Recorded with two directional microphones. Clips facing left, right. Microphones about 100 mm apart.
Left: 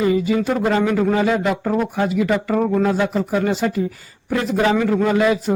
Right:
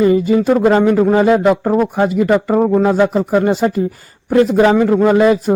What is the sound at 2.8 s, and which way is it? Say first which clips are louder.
Speech: right 6 dB; 45° right (ahead or behind).